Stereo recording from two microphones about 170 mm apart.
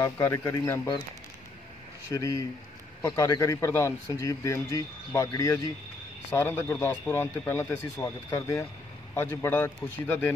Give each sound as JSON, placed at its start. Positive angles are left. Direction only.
{"t": 0.0, "sound": "speech", "side_deg": 15}
{"t": 2.1, "sound": "speech", "side_deg": 20}